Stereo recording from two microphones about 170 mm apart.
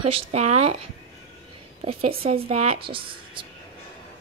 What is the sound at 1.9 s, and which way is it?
Speech, 35° right (ahead or behind).